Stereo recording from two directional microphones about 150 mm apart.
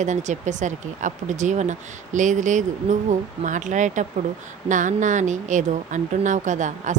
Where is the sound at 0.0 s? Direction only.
55° right (ahead or behind).